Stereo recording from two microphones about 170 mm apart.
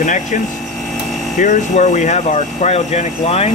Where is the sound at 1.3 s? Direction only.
45° left (ahead or behind).